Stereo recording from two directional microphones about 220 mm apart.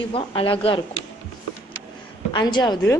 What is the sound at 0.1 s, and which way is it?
Speech, 25° left (ahead or behind).